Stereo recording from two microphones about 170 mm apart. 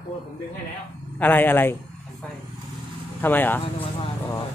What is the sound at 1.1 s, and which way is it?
Speech, 10° left (ahead or behind).